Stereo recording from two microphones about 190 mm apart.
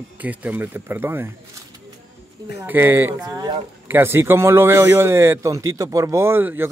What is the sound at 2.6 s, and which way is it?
Speech, 10° right (ahead or behind).